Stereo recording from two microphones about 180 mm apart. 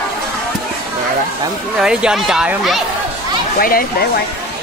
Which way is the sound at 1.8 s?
5° right (ahead or behind).